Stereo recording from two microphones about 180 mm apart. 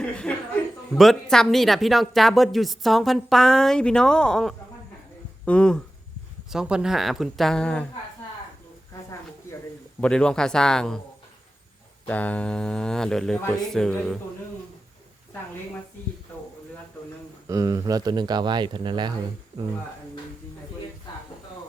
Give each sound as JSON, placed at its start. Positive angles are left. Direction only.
{"t": 0.0, "sound": "a woman's voice", "side_deg": 5}
{"t": 10.0, "sound": "a woman's voice", "side_deg": 5}
{"t": 12.0, "sound": "a woman's voice", "side_deg": 10}
{"t": 17.5, "sound": "speech", "side_deg": -20}